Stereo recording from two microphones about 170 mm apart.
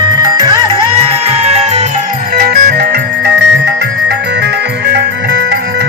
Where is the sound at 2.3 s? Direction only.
65° right (ahead or behind).